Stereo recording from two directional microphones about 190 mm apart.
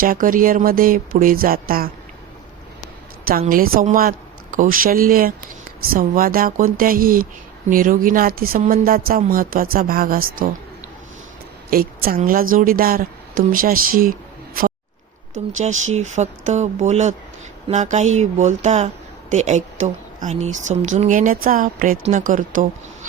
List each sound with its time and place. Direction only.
0.0 s speech: 50° right (ahead or behind)
3.2 s speech: 50° right (ahead or behind)
11.7 s a woman's voice: 50° right (ahead or behind)
15.9 s speech: 35° right (ahead or behind)